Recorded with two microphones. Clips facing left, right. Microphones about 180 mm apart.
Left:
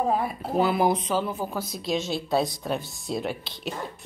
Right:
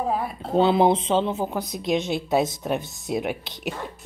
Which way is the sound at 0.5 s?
25° right (ahead or behind).